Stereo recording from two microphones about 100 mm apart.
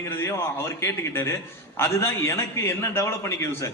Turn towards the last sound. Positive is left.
turn(degrees=25)  # may be behind; listen again after turning